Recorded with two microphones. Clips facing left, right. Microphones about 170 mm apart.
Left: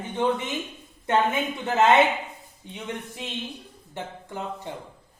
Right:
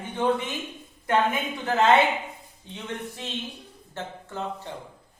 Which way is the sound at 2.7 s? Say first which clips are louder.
Even; 15° left (ahead or behind).